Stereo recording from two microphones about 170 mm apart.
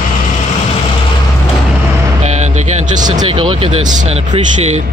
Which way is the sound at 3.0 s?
25° right (ahead or behind).